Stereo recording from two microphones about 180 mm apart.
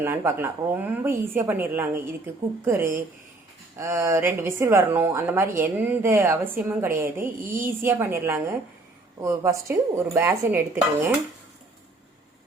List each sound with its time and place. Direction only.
0.0 s a woman's voice: 15° right (ahead or behind)